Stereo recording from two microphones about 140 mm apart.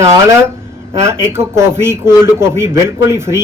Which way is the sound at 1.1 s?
20° right (ahead or behind).